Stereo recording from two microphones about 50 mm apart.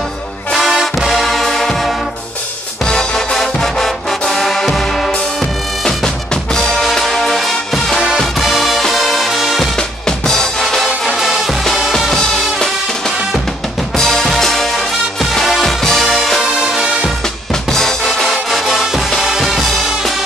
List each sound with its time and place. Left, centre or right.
0.5 s music: centre
5.9 s music: centre
9.8 s music: centre
11.6 s music: centre
12.2 s music: centre
16.5 s music: centre
17.6 s music: centre